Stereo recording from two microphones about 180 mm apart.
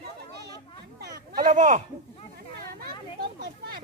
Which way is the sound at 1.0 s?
50° right (ahead or behind).